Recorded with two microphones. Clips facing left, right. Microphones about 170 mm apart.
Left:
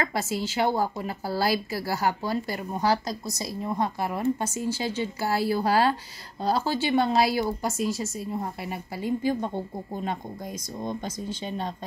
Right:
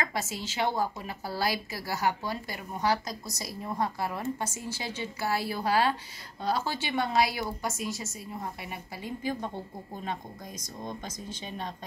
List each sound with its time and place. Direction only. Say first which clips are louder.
0.0 s a woman's voice: left 5 dB; 30° left (ahead or behind)